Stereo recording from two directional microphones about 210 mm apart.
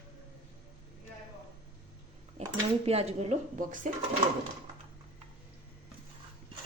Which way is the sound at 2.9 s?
30° right (ahead or behind).